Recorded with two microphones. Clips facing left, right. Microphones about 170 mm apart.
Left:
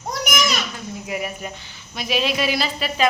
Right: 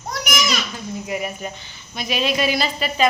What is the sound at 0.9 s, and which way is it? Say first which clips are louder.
A woman's voice: right 2 dB; 5° left (ahead or behind).